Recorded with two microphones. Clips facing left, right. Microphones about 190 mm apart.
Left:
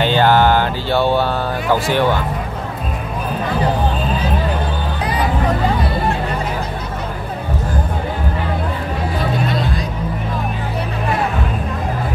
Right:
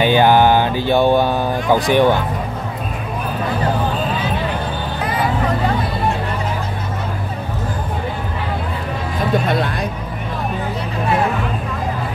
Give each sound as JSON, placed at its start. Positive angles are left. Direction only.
{"t": 0.0, "sound": "speech", "side_deg": -15}